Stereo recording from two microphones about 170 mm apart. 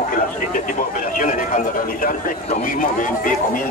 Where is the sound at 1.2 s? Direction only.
50° left (ahead or behind).